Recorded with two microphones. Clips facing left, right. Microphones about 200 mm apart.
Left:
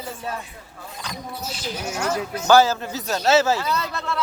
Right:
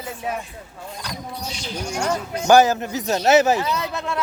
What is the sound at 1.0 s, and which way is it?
Rodents, 5° left (ahead or behind).